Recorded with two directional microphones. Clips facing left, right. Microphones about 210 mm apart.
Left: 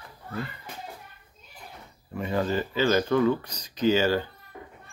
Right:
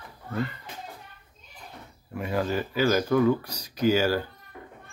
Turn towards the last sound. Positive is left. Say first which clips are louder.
# even
turn(degrees=-10)  # may be behind; listen again after turning